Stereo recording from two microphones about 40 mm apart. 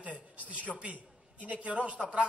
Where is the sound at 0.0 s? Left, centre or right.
Right.